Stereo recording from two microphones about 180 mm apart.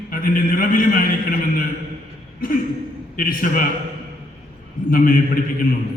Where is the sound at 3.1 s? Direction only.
50° left (ahead or behind).